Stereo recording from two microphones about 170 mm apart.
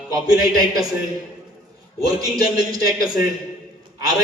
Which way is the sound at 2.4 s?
20° right (ahead or behind).